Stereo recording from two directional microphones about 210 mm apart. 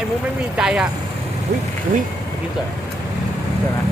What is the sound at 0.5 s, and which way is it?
Speech, 5° right (ahead or behind).